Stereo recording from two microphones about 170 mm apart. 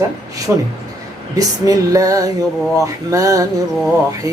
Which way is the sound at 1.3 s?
20° right (ahead or behind).